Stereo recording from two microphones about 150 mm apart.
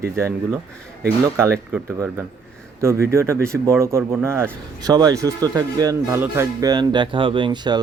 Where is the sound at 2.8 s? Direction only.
15° right (ahead or behind).